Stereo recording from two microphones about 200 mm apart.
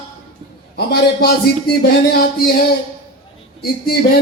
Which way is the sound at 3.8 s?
50° left (ahead or behind).